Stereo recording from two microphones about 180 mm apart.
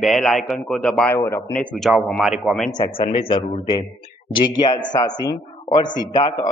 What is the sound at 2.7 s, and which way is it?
A man's voice, 25° left (ahead or behind).